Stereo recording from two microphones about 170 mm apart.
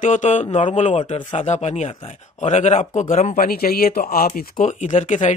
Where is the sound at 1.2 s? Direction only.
30° left (ahead or behind).